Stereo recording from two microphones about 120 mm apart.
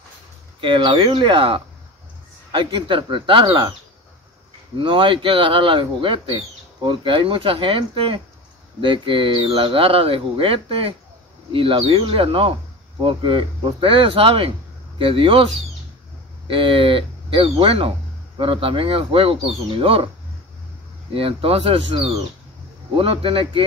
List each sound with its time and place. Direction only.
0.6 s speech: 40° right (ahead or behind)
4.7 s speech: 45° right (ahead or behind)
16.4 s speech: 50° right (ahead or behind)
21.1 s speech: 50° right (ahead or behind)